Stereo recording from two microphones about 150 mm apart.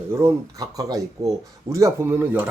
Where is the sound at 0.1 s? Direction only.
20° right (ahead or behind).